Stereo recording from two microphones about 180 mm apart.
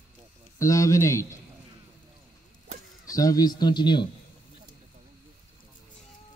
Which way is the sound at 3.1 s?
20° left (ahead or behind).